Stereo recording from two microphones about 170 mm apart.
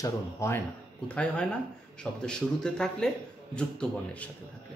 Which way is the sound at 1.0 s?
5° left (ahead or behind).